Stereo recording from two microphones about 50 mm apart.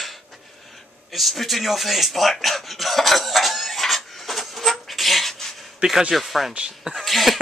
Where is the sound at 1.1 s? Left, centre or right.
Centre.